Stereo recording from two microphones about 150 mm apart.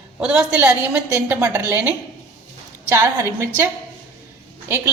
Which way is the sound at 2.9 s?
20° right (ahead or behind).